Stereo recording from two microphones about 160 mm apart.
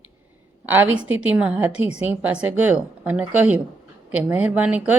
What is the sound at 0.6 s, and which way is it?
A woman's voice, 10° right (ahead or behind).